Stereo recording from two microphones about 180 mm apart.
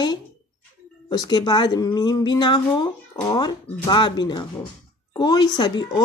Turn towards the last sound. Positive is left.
turn(degrees=25)  # may be behind; listen again after turning